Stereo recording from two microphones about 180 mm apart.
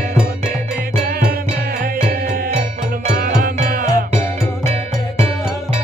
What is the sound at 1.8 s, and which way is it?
Music, 60° right (ahead or behind).